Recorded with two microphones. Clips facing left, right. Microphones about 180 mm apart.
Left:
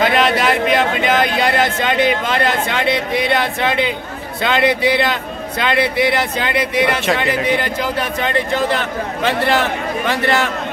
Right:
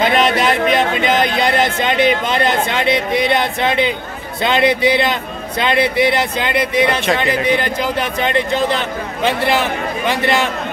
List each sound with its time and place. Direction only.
0.0 s speech: 20° right (ahead or behind)